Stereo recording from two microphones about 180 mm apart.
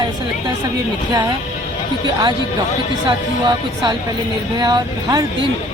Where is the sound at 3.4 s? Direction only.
25° right (ahead or behind).